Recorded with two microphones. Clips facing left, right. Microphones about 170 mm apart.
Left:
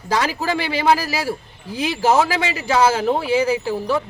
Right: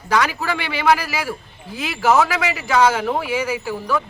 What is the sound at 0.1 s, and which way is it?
A man's voice, 30° left (ahead or behind).